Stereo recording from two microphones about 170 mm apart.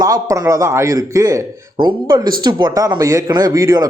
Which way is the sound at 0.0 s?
20° right (ahead or behind).